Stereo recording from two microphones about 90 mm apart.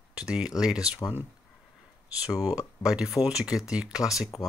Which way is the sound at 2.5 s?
10° right (ahead or behind).